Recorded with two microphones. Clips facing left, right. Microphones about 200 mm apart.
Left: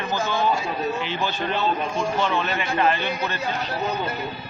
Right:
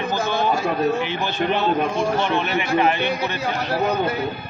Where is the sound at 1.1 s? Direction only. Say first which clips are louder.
Right 4 dB; 15° right (ahead or behind).